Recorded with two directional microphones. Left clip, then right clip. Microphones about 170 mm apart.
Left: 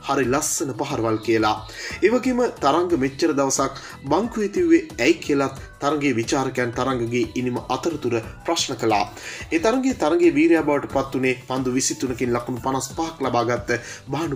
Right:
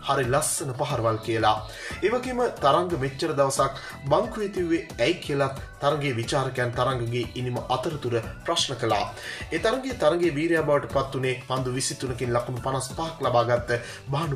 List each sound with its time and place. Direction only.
0.0 s speech: 15° left (ahead or behind)